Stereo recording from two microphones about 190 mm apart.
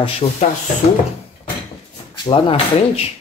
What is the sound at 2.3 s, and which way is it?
Speech, 30° left (ahead or behind).